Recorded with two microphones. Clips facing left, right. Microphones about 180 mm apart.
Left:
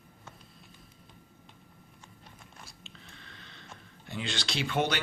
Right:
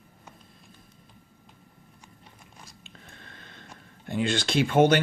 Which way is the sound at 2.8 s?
50° right (ahead or behind).